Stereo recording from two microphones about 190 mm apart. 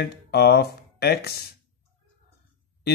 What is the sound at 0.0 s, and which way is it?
Speech, 55° left (ahead or behind).